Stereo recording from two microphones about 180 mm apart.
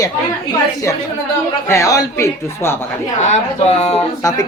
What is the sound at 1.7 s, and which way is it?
Speech, 20° left (ahead or behind).